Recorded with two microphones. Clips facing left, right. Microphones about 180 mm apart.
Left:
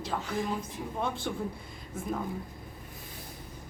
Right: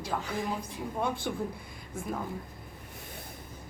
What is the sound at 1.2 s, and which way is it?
Speech, 5° right (ahead or behind).